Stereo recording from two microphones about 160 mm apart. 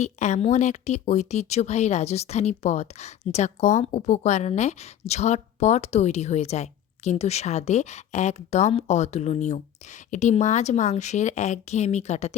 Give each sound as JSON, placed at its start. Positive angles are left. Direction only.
{"t": 0.0, "sound": "speech", "side_deg": 45}